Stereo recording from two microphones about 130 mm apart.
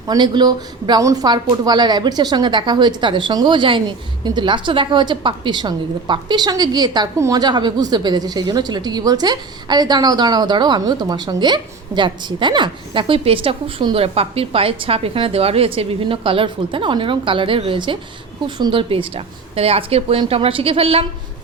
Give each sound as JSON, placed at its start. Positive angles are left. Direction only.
{"t": 0.1, "sound": "a woman's voice", "side_deg": -35}